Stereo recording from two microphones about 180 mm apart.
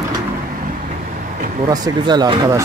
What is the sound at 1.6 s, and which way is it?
Speech, 20° right (ahead or behind).